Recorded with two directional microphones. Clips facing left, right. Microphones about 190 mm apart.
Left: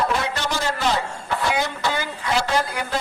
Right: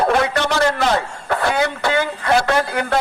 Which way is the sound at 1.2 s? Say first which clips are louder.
Right 5 dB; 60° right (ahead or behind).